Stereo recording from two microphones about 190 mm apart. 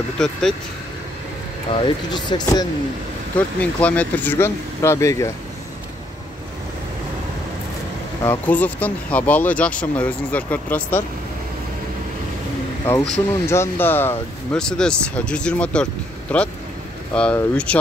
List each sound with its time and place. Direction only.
0.2 s speech: centre (ahead or behind)
1.7 s speech: 25° left (ahead or behind)
3.3 s speech: 10° left (ahead or behind)
8.2 s speech: 10° left (ahead or behind)
13.3 s speech: 15° left (ahead or behind)